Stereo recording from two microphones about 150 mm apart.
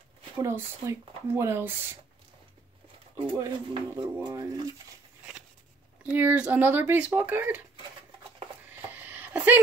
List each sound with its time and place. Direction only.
0.4 s speech: 20° right (ahead or behind)
3.3 s speech: 25° right (ahead or behind)
6.1 s speech: 10° right (ahead or behind)
8.9 s a sound: 10° right (ahead or behind)